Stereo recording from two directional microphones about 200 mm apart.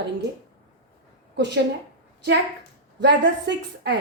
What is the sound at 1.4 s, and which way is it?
Speech, 60° right (ahead or behind).